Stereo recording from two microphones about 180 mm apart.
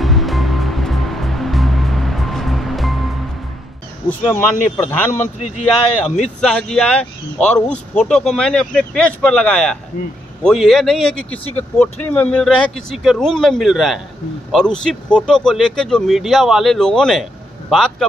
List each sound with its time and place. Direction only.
0.0 s music: centre (ahead or behind)
4.3 s speech: 10° left (ahead or behind)
5.4 s speech: 40° left (ahead or behind)
6.1 s speech: 5° left (ahead or behind)